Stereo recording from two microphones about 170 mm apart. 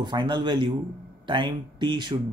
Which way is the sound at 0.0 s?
25° right (ahead or behind).